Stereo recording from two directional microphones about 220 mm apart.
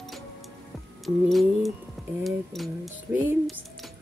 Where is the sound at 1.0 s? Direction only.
Centre (ahead or behind).